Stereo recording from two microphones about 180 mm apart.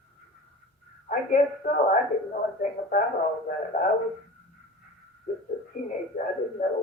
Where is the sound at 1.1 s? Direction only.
50° left (ahead or behind).